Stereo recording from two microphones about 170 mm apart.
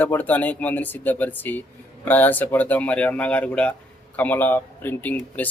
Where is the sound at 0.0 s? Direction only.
10° left (ahead or behind).